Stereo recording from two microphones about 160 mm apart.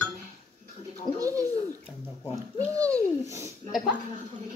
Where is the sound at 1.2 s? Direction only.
20° right (ahead or behind).